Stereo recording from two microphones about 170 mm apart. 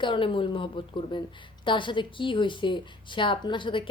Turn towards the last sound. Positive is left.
turn(degrees=30)  # may be behind; listen again after turning